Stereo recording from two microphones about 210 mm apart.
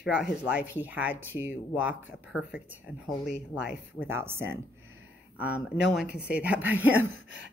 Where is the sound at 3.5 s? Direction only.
5° right (ahead or behind).